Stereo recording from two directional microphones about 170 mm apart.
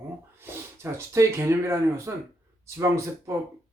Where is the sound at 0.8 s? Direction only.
15° right (ahead or behind).